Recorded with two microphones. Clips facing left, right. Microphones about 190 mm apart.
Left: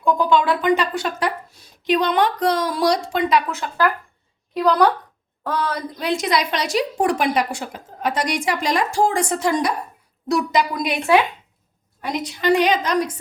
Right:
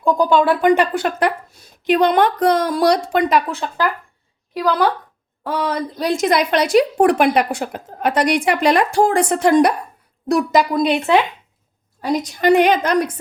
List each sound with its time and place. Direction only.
0.0 s speech: 40° right (ahead or behind)
4.5 s a woman's voice: centre (ahead or behind)
6.0 s a woman's voice: 45° right (ahead or behind); by 9.7 s 60° right (ahead or behind)
10.2 s speech: 50° right (ahead or behind)
10.8 s speech: 20° right (ahead or behind)
12.0 s a woman's voice: 45° right (ahead or behind)